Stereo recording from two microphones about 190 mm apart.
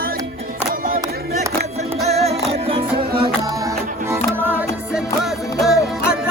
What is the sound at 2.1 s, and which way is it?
Music, 35° right (ahead or behind).